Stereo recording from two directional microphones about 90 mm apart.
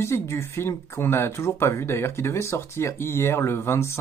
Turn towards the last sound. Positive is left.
turn(degrees=30)  # may be behind; listen again after turning